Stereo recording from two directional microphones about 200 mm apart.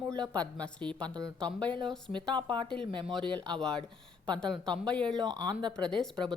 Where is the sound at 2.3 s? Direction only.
25° right (ahead or behind).